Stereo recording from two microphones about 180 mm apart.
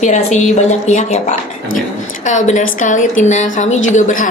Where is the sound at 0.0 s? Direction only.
40° left (ahead or behind).